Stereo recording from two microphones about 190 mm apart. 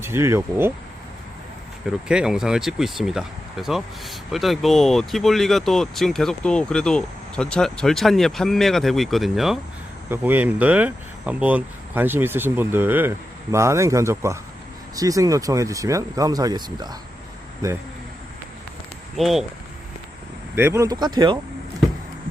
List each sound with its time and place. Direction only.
0.0 s speech: 15° right (ahead or behind)
2.0 s speech: 5° right (ahead or behind); by 17.0 s 20° right (ahead or behind)
19.1 s speech: centre (ahead or behind)
20.6 s speech: 15° right (ahead or behind)